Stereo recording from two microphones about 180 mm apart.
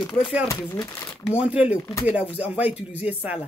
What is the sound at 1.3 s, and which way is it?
A woman's voice, 5° right (ahead or behind).